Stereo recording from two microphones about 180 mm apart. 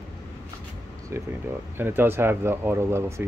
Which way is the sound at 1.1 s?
15° right (ahead or behind).